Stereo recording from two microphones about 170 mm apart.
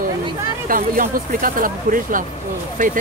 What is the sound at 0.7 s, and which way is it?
Speech, 55° right (ahead or behind).